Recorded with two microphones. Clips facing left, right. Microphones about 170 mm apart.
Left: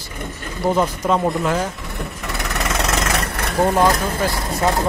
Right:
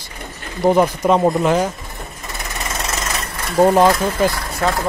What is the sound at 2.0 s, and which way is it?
Vehicle, 70° left (ahead or behind).